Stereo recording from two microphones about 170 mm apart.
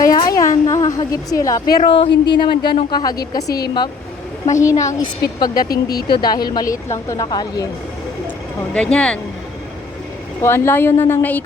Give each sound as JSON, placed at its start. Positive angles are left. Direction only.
{"t": 0.0, "sound": "a woman's voice", "side_deg": 20}
{"t": 5.6, "sound": "speech", "side_deg": 65}
{"t": 6.1, "sound": "speech", "side_deg": 25}
{"t": 8.7, "sound": "speech", "side_deg": 5}
{"t": 10.4, "sound": "a woman's voice", "side_deg": 15}